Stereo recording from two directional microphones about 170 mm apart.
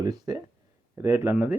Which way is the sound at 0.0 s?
20° right (ahead or behind).